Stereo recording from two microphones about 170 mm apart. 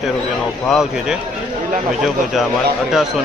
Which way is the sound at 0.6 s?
5° right (ahead or behind).